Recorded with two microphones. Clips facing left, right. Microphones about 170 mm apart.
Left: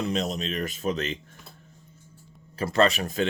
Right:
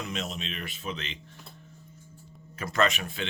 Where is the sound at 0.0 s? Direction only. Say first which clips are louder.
Left 7 dB; 35° left (ahead or behind).